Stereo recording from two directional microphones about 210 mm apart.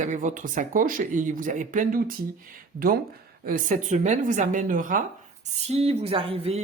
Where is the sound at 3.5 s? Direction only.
40° right (ahead or behind).